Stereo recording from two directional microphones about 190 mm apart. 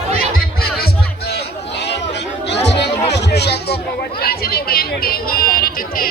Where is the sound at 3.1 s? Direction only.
60° left (ahead or behind).